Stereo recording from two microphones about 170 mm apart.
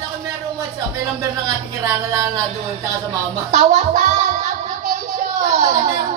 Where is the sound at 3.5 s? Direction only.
45° right (ahead or behind).